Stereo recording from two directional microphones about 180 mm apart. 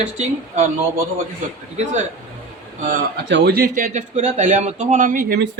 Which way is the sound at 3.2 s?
70° right (ahead or behind).